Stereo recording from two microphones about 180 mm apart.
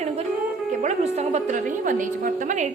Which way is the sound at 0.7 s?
40° right (ahead or behind).